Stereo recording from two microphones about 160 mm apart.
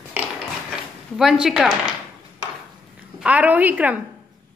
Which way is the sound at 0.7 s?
5° right (ahead or behind).